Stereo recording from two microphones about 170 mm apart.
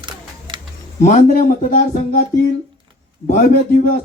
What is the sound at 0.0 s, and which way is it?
Camera, 30° right (ahead or behind).